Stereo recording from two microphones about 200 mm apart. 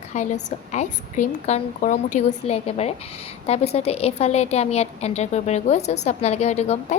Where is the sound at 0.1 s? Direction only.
35° left (ahead or behind).